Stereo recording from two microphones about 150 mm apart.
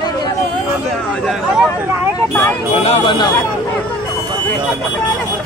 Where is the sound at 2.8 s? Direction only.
35° left (ahead or behind).